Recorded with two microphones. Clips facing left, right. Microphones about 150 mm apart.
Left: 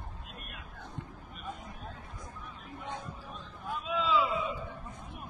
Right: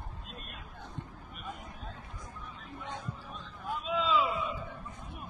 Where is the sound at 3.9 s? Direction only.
20° right (ahead or behind).